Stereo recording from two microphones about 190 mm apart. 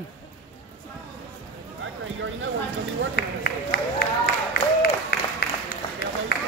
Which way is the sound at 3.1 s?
55° left (ahead or behind).